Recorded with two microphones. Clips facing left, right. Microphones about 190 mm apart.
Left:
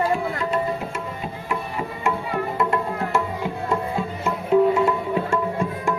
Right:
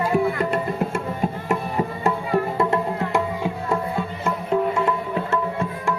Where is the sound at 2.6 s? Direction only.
25° right (ahead or behind).